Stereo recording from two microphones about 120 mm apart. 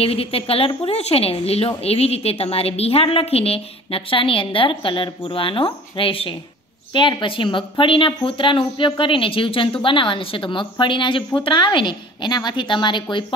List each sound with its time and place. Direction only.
0.0 s speech: 55° left (ahead or behind)